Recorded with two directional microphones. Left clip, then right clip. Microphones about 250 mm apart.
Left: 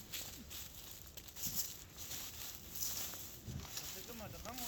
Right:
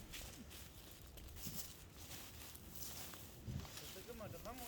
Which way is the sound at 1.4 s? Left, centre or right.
Left.